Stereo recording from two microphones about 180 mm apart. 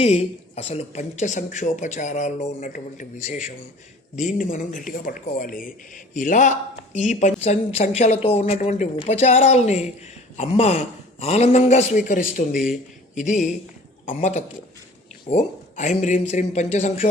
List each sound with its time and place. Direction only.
0.0 s speech: 35° left (ahead or behind)
12.5 s speech: 5° right (ahead or behind)
13.1 s a man's voice: 45° left (ahead or behind)